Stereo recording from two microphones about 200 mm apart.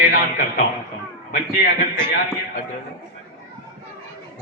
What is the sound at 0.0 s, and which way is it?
Speech, 45° left (ahead or behind).